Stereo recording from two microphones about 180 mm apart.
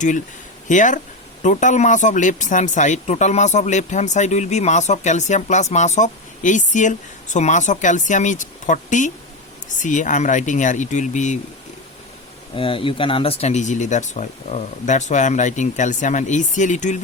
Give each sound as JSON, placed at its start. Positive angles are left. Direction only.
{"t": 0.7, "sound": "speech", "side_deg": 45}
{"t": 12.5, "sound": "speech", "side_deg": 30}